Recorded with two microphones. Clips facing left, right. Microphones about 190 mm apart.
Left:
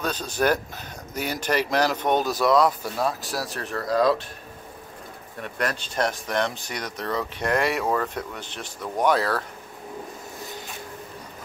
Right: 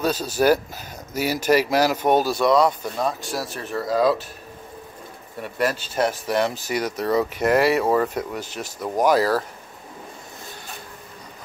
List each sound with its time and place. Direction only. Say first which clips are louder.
0.0 s speech: right 4 dB; 5° right (ahead or behind)
5.4 s speech: right 4 dB; 5° right (ahead or behind)